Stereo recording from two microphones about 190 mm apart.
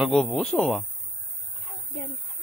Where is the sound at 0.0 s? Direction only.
Centre (ahead or behind).